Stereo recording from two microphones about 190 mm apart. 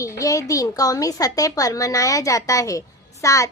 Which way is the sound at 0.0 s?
15° left (ahead or behind).